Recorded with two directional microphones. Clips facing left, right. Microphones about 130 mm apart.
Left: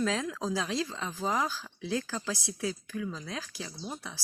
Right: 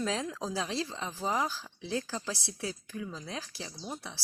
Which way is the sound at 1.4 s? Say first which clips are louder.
Left 1 dB; 30° right (ahead or behind).